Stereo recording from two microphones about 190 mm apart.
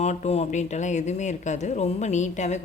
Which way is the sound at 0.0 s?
35° left (ahead or behind).